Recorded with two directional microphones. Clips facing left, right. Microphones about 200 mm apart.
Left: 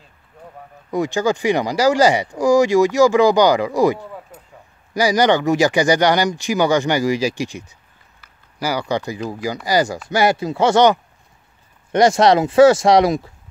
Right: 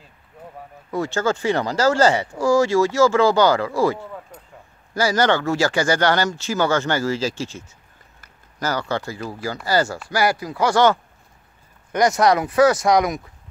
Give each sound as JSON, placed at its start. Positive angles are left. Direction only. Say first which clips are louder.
{"t": 0.9, "sound": "speech", "louder": "left 3 dB", "side_deg": 15}
{"t": 4.3, "sound": "a sound", "louder": "left 1 dB", "side_deg": 5}
{"t": 4.9, "sound": "speech", "louder": "left 3 dB", "side_deg": 15}